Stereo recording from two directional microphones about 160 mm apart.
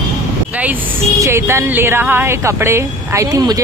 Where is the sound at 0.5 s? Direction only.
10° right (ahead or behind).